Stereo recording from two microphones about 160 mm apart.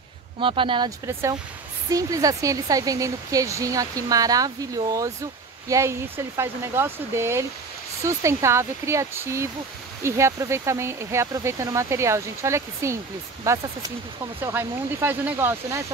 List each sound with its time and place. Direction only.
0.4 s speech: 30° right (ahead or behind); by 15.8 s 15° right (ahead or behind)